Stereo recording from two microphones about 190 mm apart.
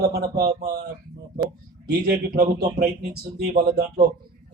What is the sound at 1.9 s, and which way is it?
Speech, 50° right (ahead or behind).